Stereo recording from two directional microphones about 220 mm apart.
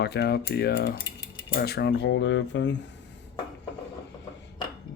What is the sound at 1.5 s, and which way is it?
Speech, 45° left (ahead or behind).